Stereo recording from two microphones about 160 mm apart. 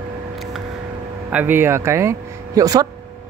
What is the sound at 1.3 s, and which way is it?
Speech, 10° right (ahead or behind).